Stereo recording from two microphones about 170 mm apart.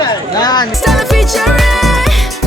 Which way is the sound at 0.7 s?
Centre (ahead or behind).